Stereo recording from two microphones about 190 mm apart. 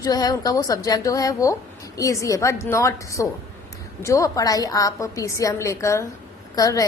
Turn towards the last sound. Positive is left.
turn(degrees=20)  # may be behind; listen again after turning